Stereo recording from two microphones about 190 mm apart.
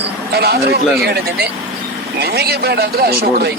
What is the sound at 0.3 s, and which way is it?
Speech, 55° right (ahead or behind).